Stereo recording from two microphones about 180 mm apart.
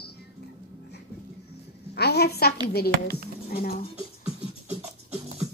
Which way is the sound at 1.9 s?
65° left (ahead or behind).